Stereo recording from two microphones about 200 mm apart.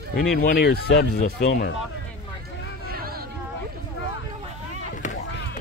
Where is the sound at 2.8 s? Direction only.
50° right (ahead or behind).